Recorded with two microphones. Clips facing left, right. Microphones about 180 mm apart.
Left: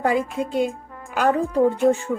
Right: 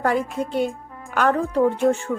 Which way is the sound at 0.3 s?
5° left (ahead or behind).